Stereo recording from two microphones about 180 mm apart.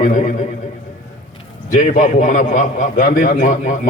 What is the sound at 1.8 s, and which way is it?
A man's voice, 45° left (ahead or behind).